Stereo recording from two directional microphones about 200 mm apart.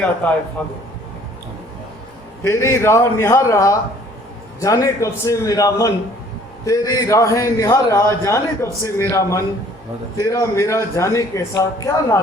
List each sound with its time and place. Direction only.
0.6 s a man's voice: 5° left (ahead or behind)
2.4 s a man's voice: 15° left (ahead or behind)